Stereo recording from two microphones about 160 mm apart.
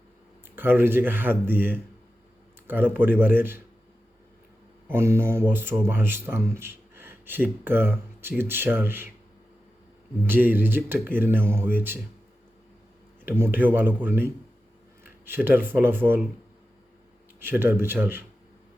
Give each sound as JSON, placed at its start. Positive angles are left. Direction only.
{"t": 0.5, "sound": "speech", "side_deg": -15}
{"t": 4.9, "sound": "speech", "side_deg": -15}
{"t": 10.2, "sound": "speech", "side_deg": -10}
{"t": 13.2, "sound": "speech", "side_deg": -15}
{"t": 17.4, "sound": "speech", "side_deg": -15}